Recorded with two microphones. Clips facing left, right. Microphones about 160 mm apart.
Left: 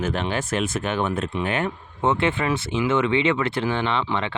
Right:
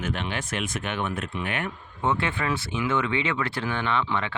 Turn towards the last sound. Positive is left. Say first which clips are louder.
# left 2 dB
turn(degrees=25)  # may be behind; listen again after turning